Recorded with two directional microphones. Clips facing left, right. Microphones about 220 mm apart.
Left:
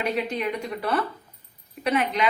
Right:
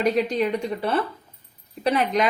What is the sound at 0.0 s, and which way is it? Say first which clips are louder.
A woman's voice: right 5 dB; 40° right (ahead or behind).